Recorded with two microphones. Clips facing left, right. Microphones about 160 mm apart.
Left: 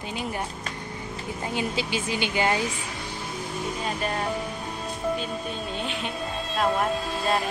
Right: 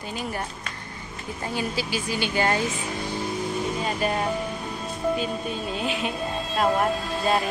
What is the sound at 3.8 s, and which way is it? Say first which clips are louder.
Speech: right 2 dB; 5° right (ahead or behind).